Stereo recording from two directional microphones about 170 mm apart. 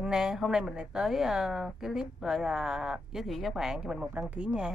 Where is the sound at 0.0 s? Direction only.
5° right (ahead or behind).